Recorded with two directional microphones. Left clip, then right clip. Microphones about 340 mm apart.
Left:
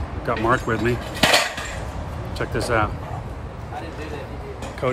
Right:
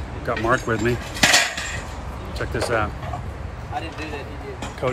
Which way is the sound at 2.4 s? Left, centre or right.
Centre.